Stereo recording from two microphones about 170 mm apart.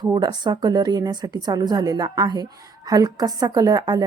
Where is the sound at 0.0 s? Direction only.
25° right (ahead or behind).